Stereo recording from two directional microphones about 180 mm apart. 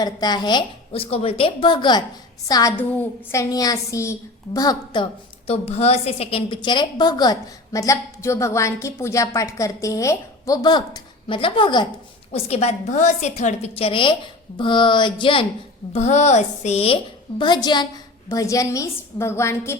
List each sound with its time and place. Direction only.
0.0 s a woman's voice: 20° left (ahead or behind)
5.5 s a woman's voice: 35° left (ahead or behind)
12.3 s a woman's voice: 35° left (ahead or behind)
15.9 s a woman's voice: 40° left (ahead or behind); by 19.7 s 15° left (ahead or behind)